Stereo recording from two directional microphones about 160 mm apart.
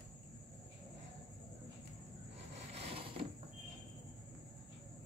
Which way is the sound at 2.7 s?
35° right (ahead or behind).